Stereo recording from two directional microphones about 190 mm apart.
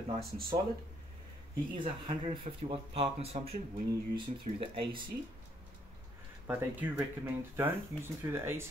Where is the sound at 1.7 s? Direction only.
25° right (ahead or behind).